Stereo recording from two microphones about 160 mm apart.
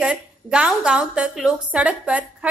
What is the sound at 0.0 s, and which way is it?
A woman's voice, 5° right (ahead or behind).